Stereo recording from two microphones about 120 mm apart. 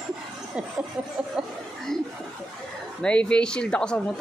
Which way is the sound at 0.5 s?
5° right (ahead or behind).